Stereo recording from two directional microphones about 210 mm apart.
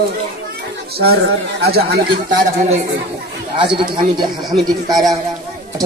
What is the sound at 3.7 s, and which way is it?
Speech, 25° right (ahead or behind).